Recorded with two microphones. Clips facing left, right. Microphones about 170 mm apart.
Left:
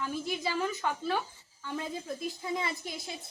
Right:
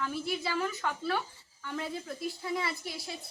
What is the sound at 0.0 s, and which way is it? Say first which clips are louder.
A woman's voice: even; 15° left (ahead or behind).